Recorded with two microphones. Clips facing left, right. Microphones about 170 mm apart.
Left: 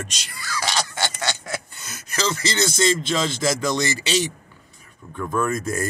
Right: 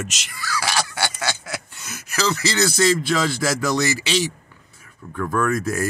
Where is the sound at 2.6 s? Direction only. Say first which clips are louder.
Right 3 dB; 20° left (ahead or behind).